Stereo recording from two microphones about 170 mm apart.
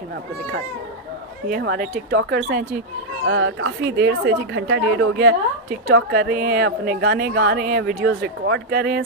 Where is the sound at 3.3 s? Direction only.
90° right.